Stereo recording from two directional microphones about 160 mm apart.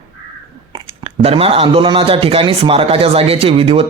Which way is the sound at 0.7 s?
35° right (ahead or behind).